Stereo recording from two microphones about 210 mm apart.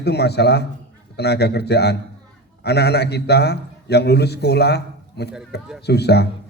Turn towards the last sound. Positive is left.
turn(degrees=50)  # may be behind; listen again after turning